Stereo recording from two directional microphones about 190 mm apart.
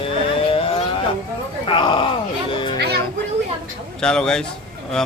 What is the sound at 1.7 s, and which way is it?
Music, 25° left (ahead or behind).